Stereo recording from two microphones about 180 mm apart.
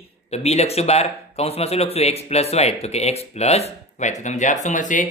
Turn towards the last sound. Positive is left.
turn(degrees=45)  # may be behind; listen again after turning